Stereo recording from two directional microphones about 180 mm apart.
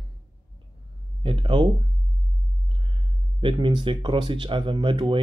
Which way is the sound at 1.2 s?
30° right (ahead or behind).